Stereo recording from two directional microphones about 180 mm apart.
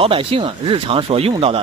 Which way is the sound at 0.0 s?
30° right (ahead or behind).